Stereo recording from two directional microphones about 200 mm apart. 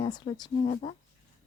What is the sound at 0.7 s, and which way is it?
Speech, 35° left (ahead or behind).